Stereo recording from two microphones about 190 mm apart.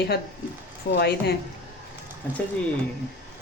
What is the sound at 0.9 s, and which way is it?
Speech, 60° left (ahead or behind).